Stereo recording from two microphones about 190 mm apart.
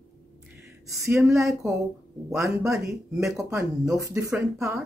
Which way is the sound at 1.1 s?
5° right (ahead or behind).